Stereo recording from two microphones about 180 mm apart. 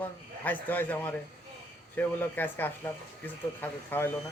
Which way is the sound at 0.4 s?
10° left (ahead or behind).